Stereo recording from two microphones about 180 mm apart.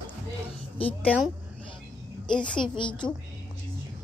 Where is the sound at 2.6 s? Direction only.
25° left (ahead or behind).